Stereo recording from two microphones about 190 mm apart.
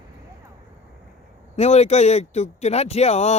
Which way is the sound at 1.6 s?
35° left (ahead or behind).